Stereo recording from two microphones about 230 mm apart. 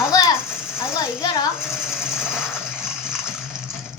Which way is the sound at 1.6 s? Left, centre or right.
Centre.